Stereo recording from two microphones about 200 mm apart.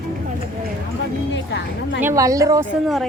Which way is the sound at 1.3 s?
65° left (ahead or behind).